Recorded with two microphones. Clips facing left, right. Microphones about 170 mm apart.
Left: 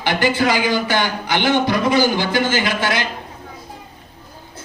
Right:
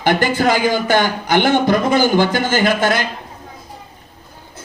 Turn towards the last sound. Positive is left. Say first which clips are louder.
# right 4 dB
turn(degrees=-50)  # may be behind; listen again after turning